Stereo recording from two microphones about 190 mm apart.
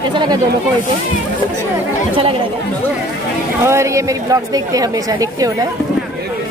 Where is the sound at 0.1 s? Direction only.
25° right (ahead or behind).